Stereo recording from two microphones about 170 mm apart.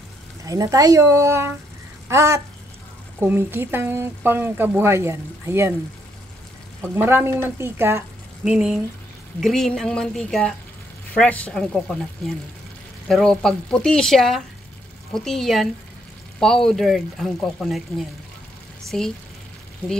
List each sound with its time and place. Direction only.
0.5 s speech: 20° right (ahead or behind)
2.0 s a sound: 15° right (ahead or behind)
3.2 s speech: 10° right (ahead or behind)
6.8 s speech: 15° right (ahead or behind); by 19.1 s 5° left (ahead or behind)